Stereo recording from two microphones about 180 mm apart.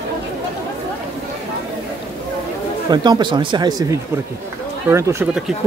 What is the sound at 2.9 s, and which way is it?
Speech, 25° right (ahead or behind).